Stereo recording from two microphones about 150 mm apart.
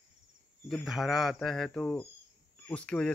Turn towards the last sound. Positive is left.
turn(degrees=5)  # may be behind; listen again after turning